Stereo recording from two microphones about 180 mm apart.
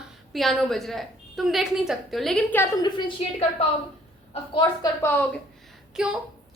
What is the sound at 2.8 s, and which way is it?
Speech, 25° left (ahead or behind).